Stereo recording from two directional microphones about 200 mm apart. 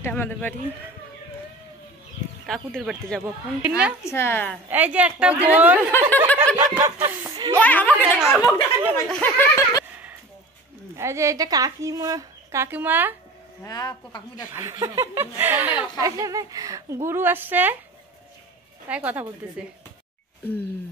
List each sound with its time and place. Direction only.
0.0 s speech: 10° left (ahead or behind)
2.4 s speech: centre (ahead or behind)
4.0 s speech: 10° left (ahead or behind)
4.6 s speech: 10° right (ahead or behind)
5.9 s speech: 10° left (ahead or behind)
6.4 s snicker: 20° right (ahead or behind)
6.8 s speech: 20° right (ahead or behind)
7.5 s speech: 10° left (ahead or behind)
8.2 s speech: 5° right (ahead or behind)
8.9 s speech: 10° left (ahead or behind)
11.0 s speech: 15° right (ahead or behind)
13.7 s speech: 20° left (ahead or behind)
14.5 s speech: 15° right (ahead or behind)
18.9 s speech: 5° right (ahead or behind)